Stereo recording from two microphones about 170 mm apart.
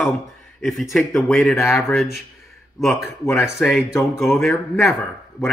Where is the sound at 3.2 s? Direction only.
15° left (ahead or behind).